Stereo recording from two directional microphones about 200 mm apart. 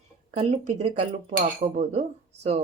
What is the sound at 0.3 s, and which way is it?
A woman's voice, 35° right (ahead or behind).